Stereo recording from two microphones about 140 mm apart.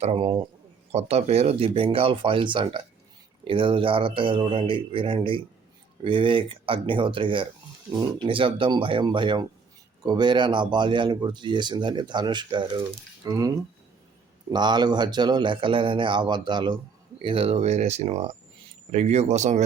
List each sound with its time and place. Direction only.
0.0 s speech: 45° right (ahead or behind); by 13.5 s 25° right (ahead or behind)
14.5 s speech: 30° right (ahead or behind); by 19.6 s 55° right (ahead or behind)